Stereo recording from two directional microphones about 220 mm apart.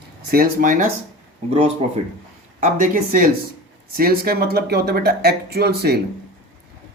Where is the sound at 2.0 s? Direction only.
30° right (ahead or behind); by 6.0 s 45° right (ahead or behind).